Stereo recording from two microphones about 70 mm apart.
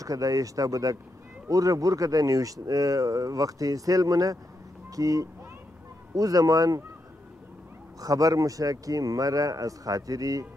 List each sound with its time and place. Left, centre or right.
0.0 s speech: right
8.0 s speech: right